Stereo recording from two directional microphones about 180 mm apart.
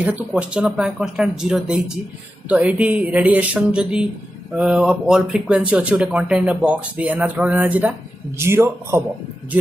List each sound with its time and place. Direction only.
0.0 s speech: 5° right (ahead or behind)